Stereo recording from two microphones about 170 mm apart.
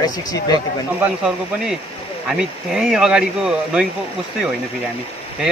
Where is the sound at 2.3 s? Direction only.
Centre (ahead or behind).